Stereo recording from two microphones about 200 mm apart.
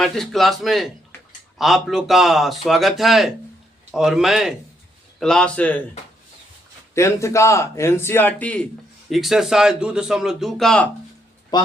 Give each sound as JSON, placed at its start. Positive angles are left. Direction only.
{"t": 0.0, "sound": "a man's voice", "side_deg": 0}
{"t": 6.9, "sound": "a man's voice", "side_deg": 15}
{"t": 11.5, "sound": "a man's voice", "side_deg": 20}